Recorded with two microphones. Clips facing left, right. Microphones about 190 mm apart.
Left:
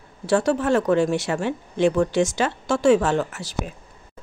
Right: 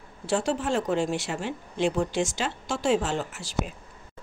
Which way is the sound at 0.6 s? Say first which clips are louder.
Left 7 dB; 60° left (ahead or behind).